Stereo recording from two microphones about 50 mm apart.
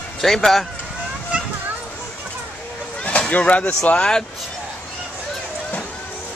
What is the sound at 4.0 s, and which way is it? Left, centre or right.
Speech, centre.